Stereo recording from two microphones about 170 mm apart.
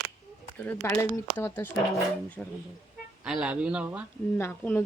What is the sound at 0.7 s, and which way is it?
Speech, 15° left (ahead or behind).